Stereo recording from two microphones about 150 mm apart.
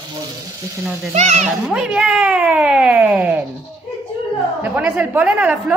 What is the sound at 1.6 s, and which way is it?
Speech, 5° right (ahead or behind).